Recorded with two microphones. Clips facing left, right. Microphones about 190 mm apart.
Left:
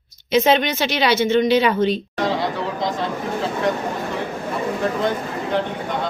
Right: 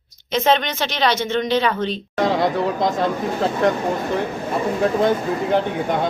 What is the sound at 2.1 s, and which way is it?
Speech, 50° right (ahead or behind).